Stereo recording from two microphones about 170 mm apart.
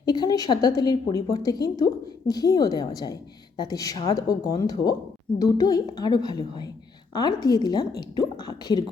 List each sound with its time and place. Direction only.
0.0 s a woman's voice: 25° left (ahead or behind)